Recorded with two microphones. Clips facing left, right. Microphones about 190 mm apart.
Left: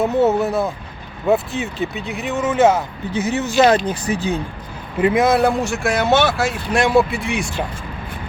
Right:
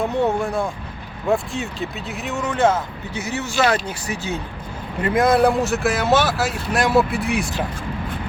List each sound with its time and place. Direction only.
0.0 s speech: 5° left (ahead or behind)
5.0 s speech: 5° left (ahead or behind)